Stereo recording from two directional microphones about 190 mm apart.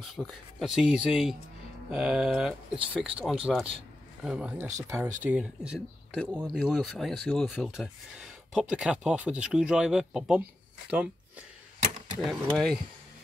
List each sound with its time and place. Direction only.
0.1 s speech: centre (ahead or behind)
12.2 s speech: centre (ahead or behind)